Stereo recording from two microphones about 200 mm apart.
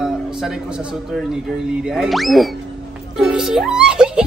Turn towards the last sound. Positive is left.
turn(degrees=-5)  # may be behind; listen again after turning